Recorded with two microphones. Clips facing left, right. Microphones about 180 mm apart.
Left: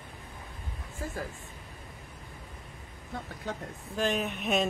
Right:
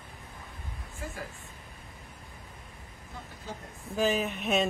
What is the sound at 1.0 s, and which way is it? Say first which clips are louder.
Speech: left 3 dB; 35° left (ahead or behind).